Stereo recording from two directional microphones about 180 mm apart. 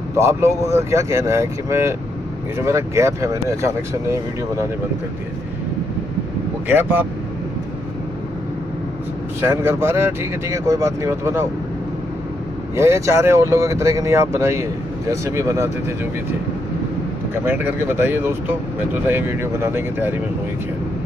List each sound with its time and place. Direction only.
0.2 s speech: 15° right (ahead or behind)
6.7 s speech: 10° right (ahead or behind)
9.4 s speech: 15° right (ahead or behind)
12.7 s speech: 15° right (ahead or behind)
17.5 s speech: 10° right (ahead or behind)